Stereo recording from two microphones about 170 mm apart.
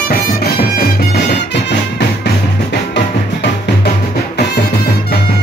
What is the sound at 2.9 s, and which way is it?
Music, 85° left.